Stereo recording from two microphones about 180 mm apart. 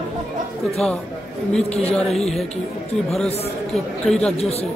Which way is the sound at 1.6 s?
35° left (ahead or behind).